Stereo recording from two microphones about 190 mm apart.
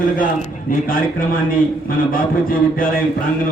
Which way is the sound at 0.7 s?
50° left (ahead or behind).